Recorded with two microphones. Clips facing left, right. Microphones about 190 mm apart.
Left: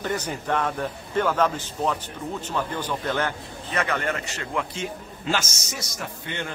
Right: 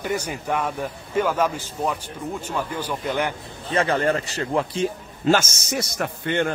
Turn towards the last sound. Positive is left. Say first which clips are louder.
# right 9 dB
turn(degrees=-55)  # may be behind; listen again after turning